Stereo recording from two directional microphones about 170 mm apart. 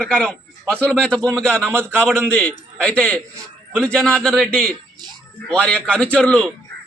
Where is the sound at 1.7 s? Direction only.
15° right (ahead or behind).